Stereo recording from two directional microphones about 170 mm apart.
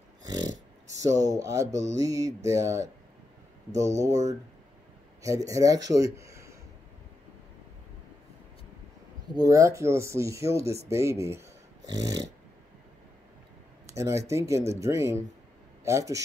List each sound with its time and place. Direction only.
0.2 s dog: 25° right (ahead or behind)
1.2 s speech: 20° right (ahead or behind)
4.1 s speech: 40° right (ahead or behind)
5.2 s speech: 20° right (ahead or behind)
5.9 s a sound: 20° right (ahead or behind)
9.3 s speech: 20° right (ahead or behind)
13.9 s speech: 15° right (ahead or behind)